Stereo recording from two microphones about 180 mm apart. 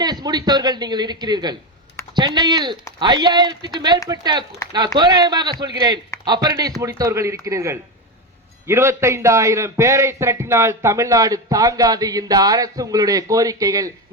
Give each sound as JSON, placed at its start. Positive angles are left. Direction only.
{"t": 0.0, "sound": "a man's voice", "side_deg": -25}